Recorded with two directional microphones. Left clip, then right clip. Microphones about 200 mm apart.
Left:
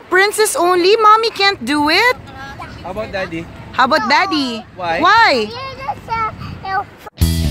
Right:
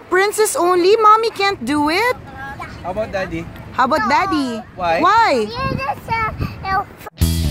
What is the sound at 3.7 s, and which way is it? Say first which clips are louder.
Speech: left 2 dB; centre (ahead or behind).